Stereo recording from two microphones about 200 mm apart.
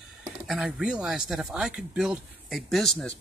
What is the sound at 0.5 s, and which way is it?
Speech, centre (ahead or behind).